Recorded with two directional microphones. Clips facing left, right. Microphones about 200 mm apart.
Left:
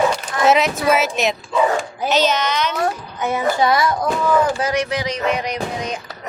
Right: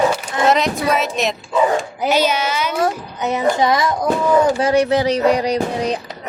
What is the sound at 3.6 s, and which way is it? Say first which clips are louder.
Speech: right 1 dB; 20° right (ahead or behind).